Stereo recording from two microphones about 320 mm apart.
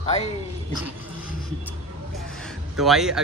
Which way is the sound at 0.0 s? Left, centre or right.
Left.